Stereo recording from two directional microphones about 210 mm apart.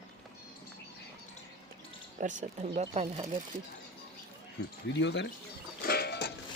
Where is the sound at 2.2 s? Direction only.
35° right (ahead or behind).